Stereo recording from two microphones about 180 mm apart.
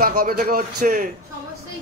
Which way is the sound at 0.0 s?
55° right (ahead or behind).